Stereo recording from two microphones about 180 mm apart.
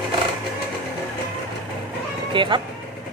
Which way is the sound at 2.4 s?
25° right (ahead or behind).